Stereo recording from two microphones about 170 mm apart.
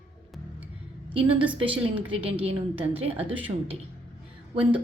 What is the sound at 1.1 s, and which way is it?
A woman's voice, 30° right (ahead or behind).